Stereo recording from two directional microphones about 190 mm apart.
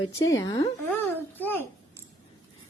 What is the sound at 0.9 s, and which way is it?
Speech, 10° left (ahead or behind).